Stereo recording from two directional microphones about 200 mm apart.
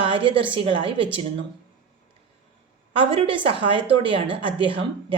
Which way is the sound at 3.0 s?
25° right (ahead or behind).